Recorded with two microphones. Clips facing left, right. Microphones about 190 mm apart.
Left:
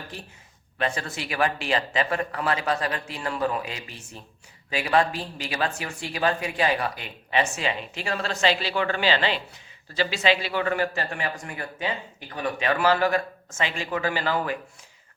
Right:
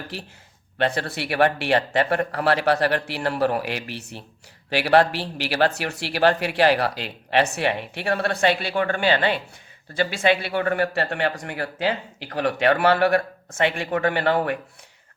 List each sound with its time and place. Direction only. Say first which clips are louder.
0.8 s a man's voice: right 5 dB; 65° right (ahead or behind)